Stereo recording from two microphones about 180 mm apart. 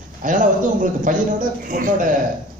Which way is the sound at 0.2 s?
45° right (ahead or behind).